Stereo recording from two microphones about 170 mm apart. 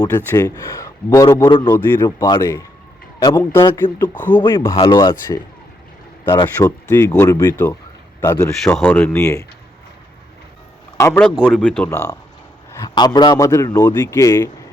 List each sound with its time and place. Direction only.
0.3 s a man's voice: 15° left (ahead or behind)
4.0 s speech: 10° left (ahead or behind)
4.4 s a man's voice: 25° left (ahead or behind)
6.9 s a man's voice: 10° left (ahead or behind)
8.6 s speech: 10° left (ahead or behind)
10.9 s a man's voice: 15° left (ahead or behind)
11.2 s speech: 5° left (ahead or behind)
11.9 s a man's voice: 15° left (ahead or behind)